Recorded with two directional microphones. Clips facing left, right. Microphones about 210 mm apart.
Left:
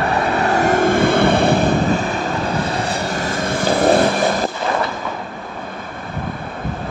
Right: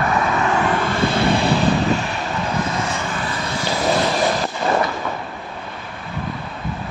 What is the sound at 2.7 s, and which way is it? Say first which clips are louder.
Vehicle: left 3 dB; 35° left (ahead or behind).